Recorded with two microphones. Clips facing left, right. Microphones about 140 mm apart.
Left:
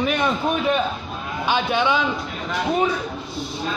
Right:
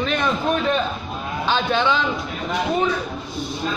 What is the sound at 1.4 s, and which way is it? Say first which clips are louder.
Speech: even; 15° left (ahead or behind).